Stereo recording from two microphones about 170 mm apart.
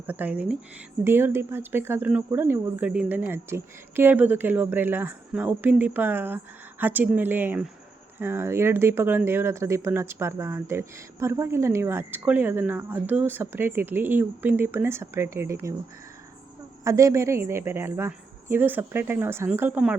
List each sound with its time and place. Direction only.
0.1 s speech: 10° right (ahead or behind)
16.8 s speech: 20° right (ahead or behind)